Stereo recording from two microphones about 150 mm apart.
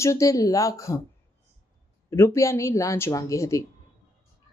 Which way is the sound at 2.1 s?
20° left (ahead or behind).